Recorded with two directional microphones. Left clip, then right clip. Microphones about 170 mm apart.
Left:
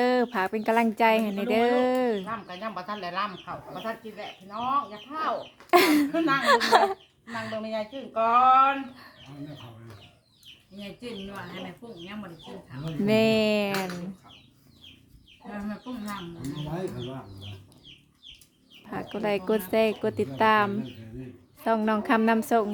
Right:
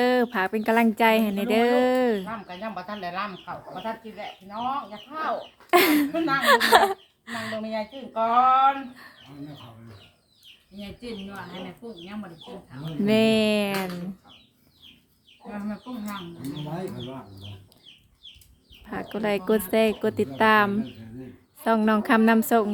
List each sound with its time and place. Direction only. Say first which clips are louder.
0.0 s speech: right 2 dB; centre (ahead or behind)
2.2 s speech: even; 20° left (ahead or behind)
4.7 s speech: left 3 dB; 20° left (ahead or behind)
5.7 s speech: right 1 dB; 5° right (ahead or behind)
6.1 s speech: even; 25° left (ahead or behind)
6.4 s speech: right 4 dB; 10° right (ahead or behind)
7.6 s speech: right 1 dB; 20° left (ahead or behind)
10.8 s speech: right 1 dB; 10° left (ahead or behind)
12.8 s speech: right 1 dB; centre (ahead or behind)
16.0 s speech: right 1 dB; 5° right (ahead or behind)
18.9 s speech: right 2 dB; 5° right (ahead or behind)